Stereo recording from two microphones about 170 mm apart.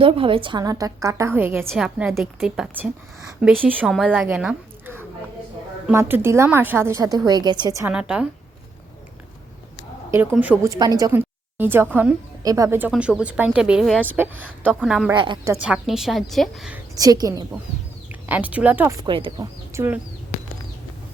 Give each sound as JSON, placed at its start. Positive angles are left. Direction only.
{"t": 0.0, "sound": "a woman's voice", "side_deg": -30}
{"t": 1.6, "sound": "a woman's voice", "side_deg": 0}
{"t": 7.9, "sound": "a woman's voice", "side_deg": -5}
{"t": 10.3, "sound": "a woman's voice", "side_deg": -10}
{"t": 10.7, "sound": "a woman's voice", "side_deg": -20}
{"t": 12.9, "sound": "a woman's voice", "side_deg": -5}
{"t": 15.1, "sound": "a woman's voice", "side_deg": -25}
{"t": 15.6, "sound": "a woman's voice", "side_deg": -5}
{"t": 16.9, "sound": "a woman's voice", "side_deg": -20}
{"t": 18.1, "sound": "speech", "side_deg": -10}
{"t": 19.0, "sound": "a woman's voice", "side_deg": -30}
{"t": 19.7, "sound": "speech", "side_deg": -15}